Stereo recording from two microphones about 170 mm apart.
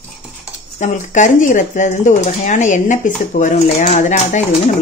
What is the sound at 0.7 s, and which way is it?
Speech, 45° left (ahead or behind).